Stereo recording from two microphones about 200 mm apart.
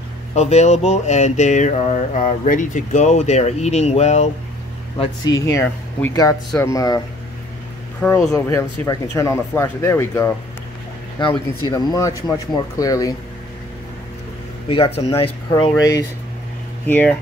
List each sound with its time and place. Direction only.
0.3 s speech: 35° left (ahead or behind)
4.9 s speech: 25° left (ahead or behind)
8.0 s speech: 5° left (ahead or behind)
8.5 s speech: 15° left (ahead or behind)
14.7 s speech: 30° left (ahead or behind)
15.5 s speech: 20° left (ahead or behind)